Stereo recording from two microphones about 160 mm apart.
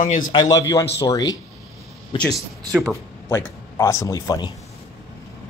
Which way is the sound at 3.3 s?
15° left (ahead or behind).